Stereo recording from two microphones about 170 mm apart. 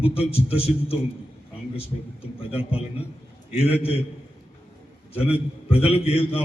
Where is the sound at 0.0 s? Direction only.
35° left (ahead or behind).